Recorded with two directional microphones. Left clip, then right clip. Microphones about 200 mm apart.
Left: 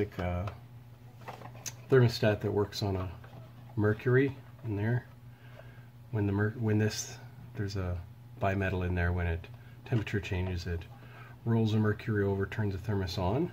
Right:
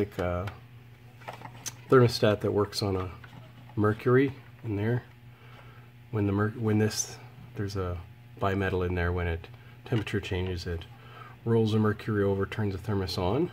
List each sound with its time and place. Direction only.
1.6 s speech: 20° right (ahead or behind)
6.1 s speech: 15° right (ahead or behind)